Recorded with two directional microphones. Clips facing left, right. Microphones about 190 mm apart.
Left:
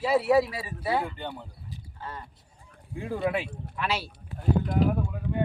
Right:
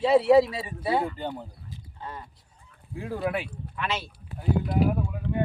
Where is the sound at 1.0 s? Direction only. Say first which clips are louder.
Right 4 dB; 35° right (ahead or behind).